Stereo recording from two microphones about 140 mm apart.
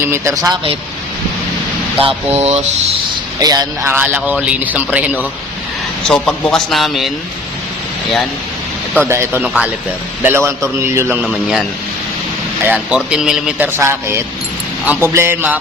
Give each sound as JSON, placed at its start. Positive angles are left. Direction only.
{"t": 0.0, "sound": "speech", "side_deg": -20}
{"t": 2.0, "sound": "speech", "side_deg": -45}
{"t": 3.4, "sound": "speech", "side_deg": -30}
{"t": 3.8, "sound": "a man's voice", "side_deg": -15}
{"t": 6.1, "sound": "speech", "side_deg": 5}
{"t": 9.0, "sound": "a man's voice", "side_deg": -20}
{"t": 12.6, "sound": "speech", "side_deg": -10}
{"t": 13.7, "sound": "a man's voice", "side_deg": -20}